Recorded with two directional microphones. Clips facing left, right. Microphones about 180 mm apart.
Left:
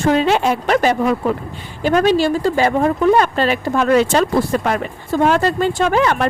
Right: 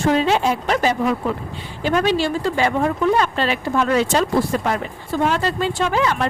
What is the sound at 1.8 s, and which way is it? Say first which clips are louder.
Speech: left 4 dB; 45° left (ahead or behind).